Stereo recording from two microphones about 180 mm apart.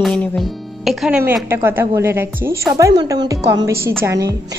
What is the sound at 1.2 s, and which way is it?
A woman's voice, 15° right (ahead or behind).